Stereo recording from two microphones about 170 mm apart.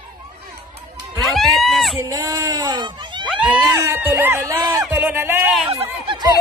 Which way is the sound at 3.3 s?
10° right (ahead or behind).